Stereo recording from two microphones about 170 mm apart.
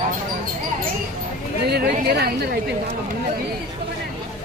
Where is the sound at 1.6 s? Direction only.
70° right (ahead or behind).